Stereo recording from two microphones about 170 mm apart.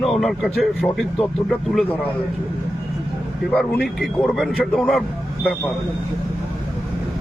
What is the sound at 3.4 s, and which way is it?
A man's voice, 5° left (ahead or behind).